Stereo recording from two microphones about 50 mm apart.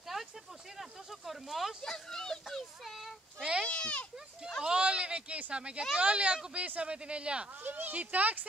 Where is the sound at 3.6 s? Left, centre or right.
Left.